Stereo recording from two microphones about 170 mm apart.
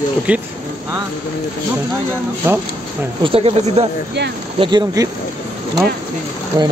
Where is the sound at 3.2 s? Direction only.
35° right (ahead or behind).